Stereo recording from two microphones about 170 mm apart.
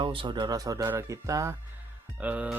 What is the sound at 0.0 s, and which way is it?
Speech, 30° right (ahead or behind).